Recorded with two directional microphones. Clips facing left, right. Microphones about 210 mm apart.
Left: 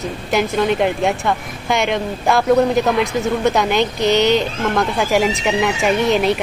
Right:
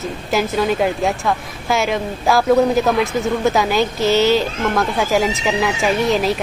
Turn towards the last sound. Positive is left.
turn(degrees=0)  # may be behind; listen again after turning